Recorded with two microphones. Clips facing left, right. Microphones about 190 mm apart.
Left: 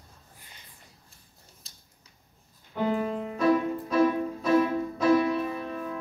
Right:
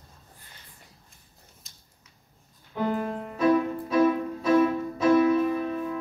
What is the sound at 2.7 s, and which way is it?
Music, centre (ahead or behind).